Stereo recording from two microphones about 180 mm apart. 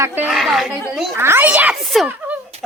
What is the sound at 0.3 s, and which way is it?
Speech, centre (ahead or behind).